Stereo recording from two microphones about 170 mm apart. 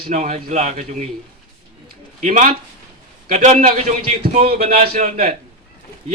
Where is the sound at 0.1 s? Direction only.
40° right (ahead or behind).